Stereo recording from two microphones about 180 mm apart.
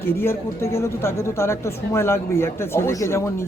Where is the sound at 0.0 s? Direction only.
15° left (ahead or behind).